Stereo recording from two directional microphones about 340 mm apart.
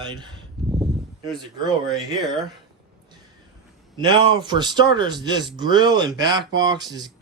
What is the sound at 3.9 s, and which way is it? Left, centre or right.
A man's voice, centre.